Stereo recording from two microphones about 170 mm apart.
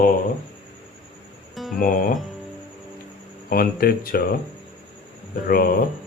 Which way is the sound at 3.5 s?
60° left (ahead or behind).